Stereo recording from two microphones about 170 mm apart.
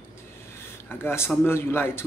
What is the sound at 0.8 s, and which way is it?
Speech, 15° left (ahead or behind).